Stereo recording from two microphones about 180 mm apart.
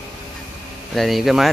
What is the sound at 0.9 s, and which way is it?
Speech, centre (ahead or behind).